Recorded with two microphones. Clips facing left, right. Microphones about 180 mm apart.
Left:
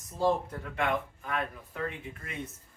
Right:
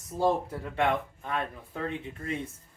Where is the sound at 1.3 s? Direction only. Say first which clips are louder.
Right 3 dB; 30° right (ahead or behind).